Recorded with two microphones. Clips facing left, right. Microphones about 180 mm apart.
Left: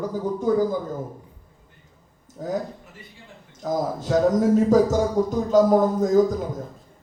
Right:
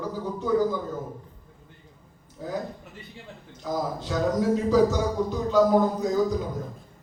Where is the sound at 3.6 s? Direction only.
45° left (ahead or behind).